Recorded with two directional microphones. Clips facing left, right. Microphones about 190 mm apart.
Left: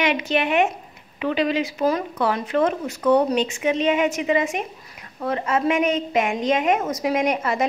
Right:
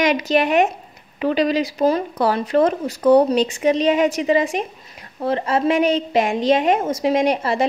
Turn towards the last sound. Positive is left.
turn(degrees=-30)  # may be behind; listen again after turning